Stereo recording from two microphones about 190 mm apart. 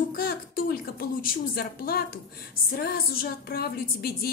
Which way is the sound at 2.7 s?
50° left (ahead or behind).